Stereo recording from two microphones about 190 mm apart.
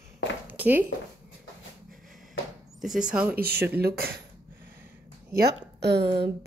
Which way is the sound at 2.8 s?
5° right (ahead or behind).